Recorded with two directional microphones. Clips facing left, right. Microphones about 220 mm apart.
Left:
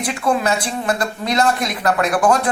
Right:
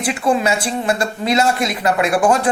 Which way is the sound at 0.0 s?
5° right (ahead or behind).